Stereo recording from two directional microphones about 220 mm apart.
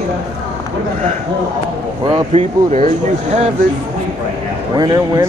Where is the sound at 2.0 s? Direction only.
30° right (ahead or behind).